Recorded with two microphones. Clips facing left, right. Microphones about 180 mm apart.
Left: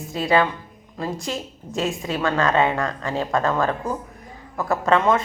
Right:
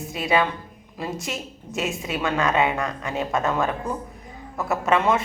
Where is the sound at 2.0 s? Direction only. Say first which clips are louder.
Left 2 dB; 20° right (ahead or behind).